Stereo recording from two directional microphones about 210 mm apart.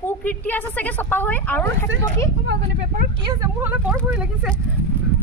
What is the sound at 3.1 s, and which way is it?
Speech, 20° right (ahead or behind).